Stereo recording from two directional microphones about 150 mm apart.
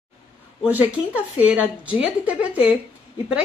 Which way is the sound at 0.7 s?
10° right (ahead or behind).